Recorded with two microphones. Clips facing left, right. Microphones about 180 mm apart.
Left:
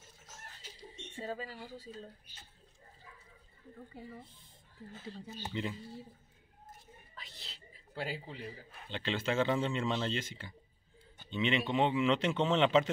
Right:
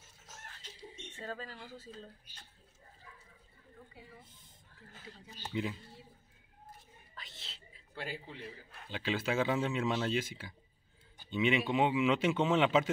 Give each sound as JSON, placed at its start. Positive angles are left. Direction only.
{"t": 0.6, "sound": "speech", "side_deg": 10}
{"t": 3.9, "sound": "speech", "side_deg": 45}
{"t": 5.5, "sound": "a man's voice", "side_deg": -5}
{"t": 7.2, "sound": "cat", "side_deg": 0}
{"t": 7.9, "sound": "a man's voice", "side_deg": 30}
{"t": 8.5, "sound": "a man's voice", "side_deg": -5}